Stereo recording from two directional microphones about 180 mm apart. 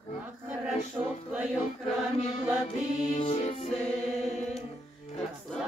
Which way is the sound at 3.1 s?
35° left (ahead or behind).